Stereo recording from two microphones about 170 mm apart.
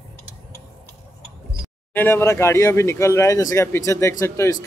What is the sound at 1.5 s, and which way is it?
Speech, 10° left (ahead or behind).